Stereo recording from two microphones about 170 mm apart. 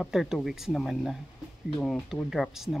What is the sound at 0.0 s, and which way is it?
Speech, centre (ahead or behind).